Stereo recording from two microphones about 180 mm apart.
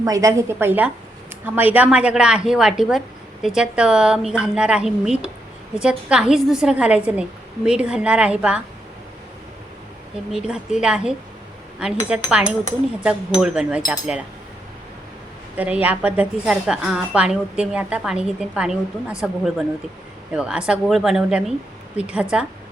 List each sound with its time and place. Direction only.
0.0 s a woman's voice: 20° right (ahead or behind)
10.3 s a woman's voice: 5° right (ahead or behind)
15.5 s a woman's voice: 10° right (ahead or behind)